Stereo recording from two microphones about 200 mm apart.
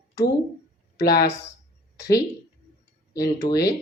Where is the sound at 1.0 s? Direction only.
50° left (ahead or behind).